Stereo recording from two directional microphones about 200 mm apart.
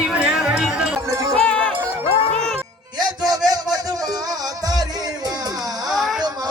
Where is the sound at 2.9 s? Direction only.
20° right (ahead or behind).